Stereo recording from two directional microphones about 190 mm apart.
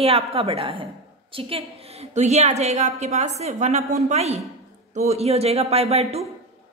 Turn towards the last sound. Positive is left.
turn(degrees=-35)  # may be behind; listen again after turning